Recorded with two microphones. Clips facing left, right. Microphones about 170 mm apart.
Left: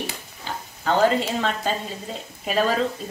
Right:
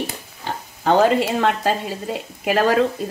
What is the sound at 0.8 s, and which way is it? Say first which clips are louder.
A woman's voice: right 4 dB; 70° right (ahead or behind).